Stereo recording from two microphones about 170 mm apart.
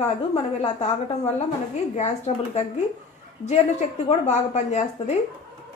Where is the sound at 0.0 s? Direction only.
40° left (ahead or behind).